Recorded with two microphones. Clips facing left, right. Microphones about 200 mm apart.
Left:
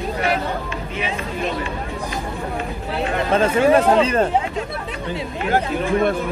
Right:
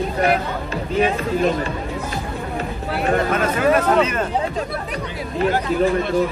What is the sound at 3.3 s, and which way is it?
Speech, 30° left (ahead or behind).